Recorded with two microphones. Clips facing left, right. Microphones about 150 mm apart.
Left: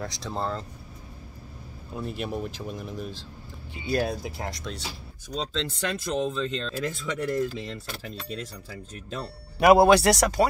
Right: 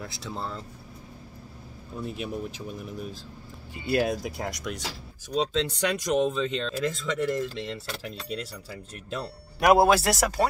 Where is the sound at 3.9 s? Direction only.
40° left (ahead or behind).